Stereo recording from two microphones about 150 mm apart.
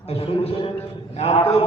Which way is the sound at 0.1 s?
40° left (ahead or behind).